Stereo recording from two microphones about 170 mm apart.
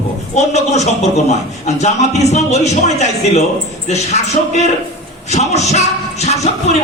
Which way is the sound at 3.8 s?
40° left (ahead or behind).